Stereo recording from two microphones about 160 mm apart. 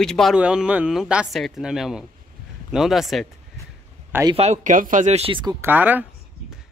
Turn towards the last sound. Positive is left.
turn(degrees=-10)  # may be behind; listen again after turning